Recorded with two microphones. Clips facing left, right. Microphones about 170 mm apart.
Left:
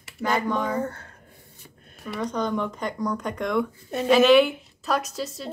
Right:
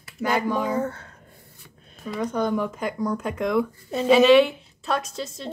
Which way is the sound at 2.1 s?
10° right (ahead or behind).